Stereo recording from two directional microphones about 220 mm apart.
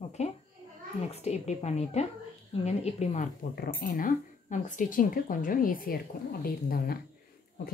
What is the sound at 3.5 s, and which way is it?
A woman's voice, 40° left (ahead or behind).